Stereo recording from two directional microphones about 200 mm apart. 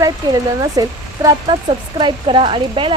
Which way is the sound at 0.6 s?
15° right (ahead or behind).